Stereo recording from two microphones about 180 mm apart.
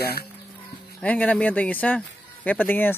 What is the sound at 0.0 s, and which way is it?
Speech, 60° left (ahead or behind).